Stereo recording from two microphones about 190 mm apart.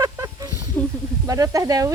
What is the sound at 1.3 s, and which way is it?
Speech, 20° right (ahead or behind).